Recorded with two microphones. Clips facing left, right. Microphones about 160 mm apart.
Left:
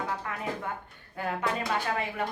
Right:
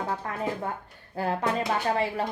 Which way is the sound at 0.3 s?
35° right (ahead or behind).